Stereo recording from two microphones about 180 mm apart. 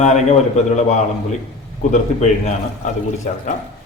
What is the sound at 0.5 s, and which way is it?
Speech, 40° left (ahead or behind).